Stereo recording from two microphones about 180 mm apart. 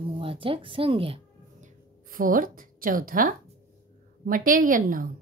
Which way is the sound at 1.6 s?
50° right (ahead or behind).